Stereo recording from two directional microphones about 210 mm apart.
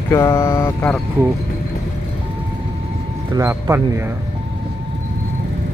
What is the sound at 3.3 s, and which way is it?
Speech, 15° right (ahead or behind).